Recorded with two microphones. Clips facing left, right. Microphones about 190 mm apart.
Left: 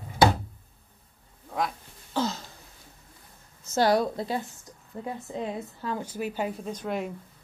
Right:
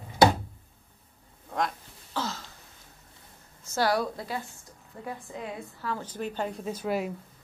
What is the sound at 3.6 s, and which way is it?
Speech, 20° left (ahead or behind).